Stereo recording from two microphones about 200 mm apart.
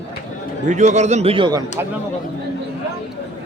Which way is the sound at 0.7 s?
35° right (ahead or behind).